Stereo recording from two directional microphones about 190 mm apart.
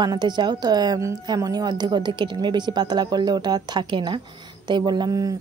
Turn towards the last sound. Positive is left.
turn(degrees=-20)  # may be behind; listen again after turning